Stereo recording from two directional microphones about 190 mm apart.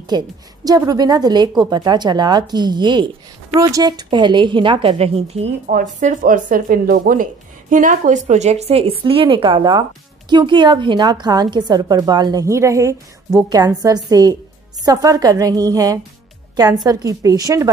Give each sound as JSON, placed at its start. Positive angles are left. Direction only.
{"t": 0.1, "sound": "a woman's voice", "side_deg": -20}